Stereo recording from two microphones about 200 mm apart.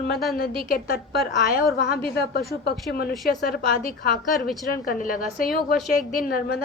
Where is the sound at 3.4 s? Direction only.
50° left (ahead or behind).